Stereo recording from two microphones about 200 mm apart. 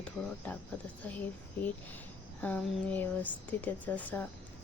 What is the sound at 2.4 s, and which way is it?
A woman's voice, 10° left (ahead or behind).